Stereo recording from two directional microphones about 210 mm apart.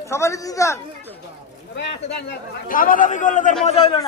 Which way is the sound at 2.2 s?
40° left (ahead or behind).